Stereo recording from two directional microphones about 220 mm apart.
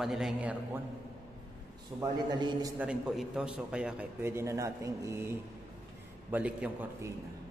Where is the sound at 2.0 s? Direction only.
20° right (ahead or behind).